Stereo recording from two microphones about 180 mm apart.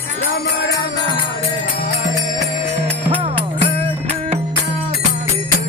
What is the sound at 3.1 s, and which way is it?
Music, 30° right (ahead or behind).